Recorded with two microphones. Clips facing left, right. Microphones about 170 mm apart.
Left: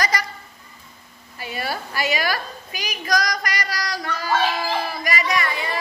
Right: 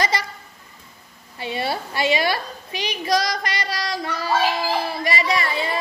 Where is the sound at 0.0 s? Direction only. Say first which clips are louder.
Right 1 dB; 25° right (ahead or behind).